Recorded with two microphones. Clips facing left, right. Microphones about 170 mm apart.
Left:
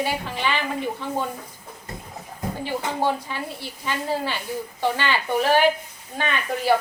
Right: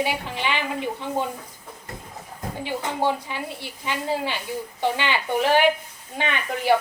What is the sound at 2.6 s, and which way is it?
A woman's voice, 15° right (ahead or behind).